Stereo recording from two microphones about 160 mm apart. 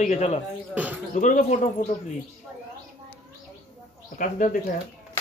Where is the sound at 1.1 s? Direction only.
50° left (ahead or behind).